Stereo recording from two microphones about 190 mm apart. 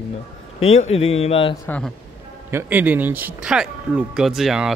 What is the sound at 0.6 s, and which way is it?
Speech, 35° left (ahead or behind).